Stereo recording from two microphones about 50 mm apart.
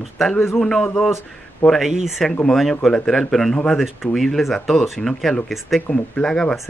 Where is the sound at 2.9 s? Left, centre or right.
Centre.